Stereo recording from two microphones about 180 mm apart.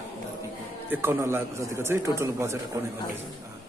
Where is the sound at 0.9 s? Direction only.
10° right (ahead or behind).